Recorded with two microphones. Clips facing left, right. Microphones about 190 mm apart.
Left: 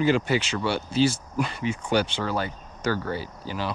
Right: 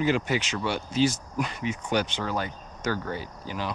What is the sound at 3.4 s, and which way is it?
Speech, 35° left (ahead or behind).